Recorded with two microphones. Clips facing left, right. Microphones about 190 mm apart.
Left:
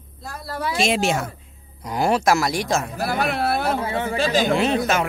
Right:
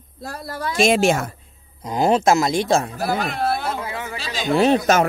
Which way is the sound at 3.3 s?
60° left (ahead or behind).